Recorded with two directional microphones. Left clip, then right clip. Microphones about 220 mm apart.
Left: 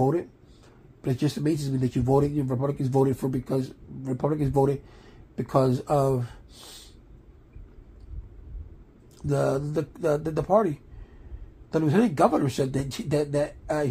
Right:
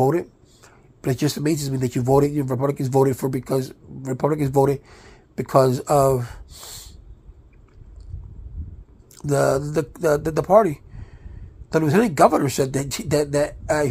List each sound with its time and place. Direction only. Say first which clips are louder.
0.0 s speech: right 5 dB; 30° right (ahead or behind)
9.1 s speech: right 6 dB; 30° right (ahead or behind)